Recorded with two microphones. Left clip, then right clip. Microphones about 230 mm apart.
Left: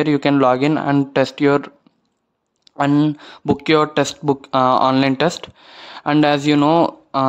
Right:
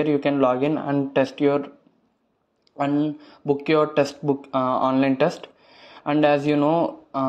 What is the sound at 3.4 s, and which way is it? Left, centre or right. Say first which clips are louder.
Speech: left 4 dB; left.